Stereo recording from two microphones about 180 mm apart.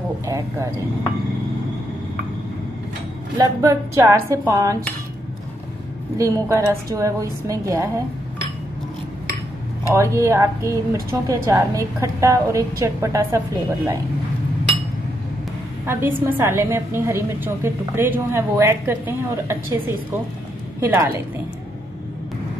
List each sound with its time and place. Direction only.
0.2 s a woman's voice: 15° right (ahead or behind)
3.3 s a woman's voice: 15° right (ahead or behind)
6.1 s a woman's voice: 15° right (ahead or behind)
9.8 s a woman's voice: 15° right (ahead or behind)
15.8 s a woman's voice: 15° right (ahead or behind)
20.8 s a woman's voice: 15° right (ahead or behind)